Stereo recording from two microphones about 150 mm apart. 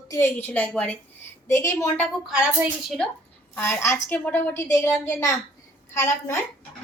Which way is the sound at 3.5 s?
15° left (ahead or behind).